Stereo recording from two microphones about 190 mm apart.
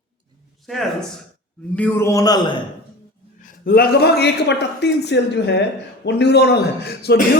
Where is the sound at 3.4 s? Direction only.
50° left (ahead or behind).